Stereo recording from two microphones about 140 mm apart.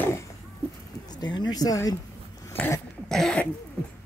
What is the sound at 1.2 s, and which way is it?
Speech, 30° left (ahead or behind).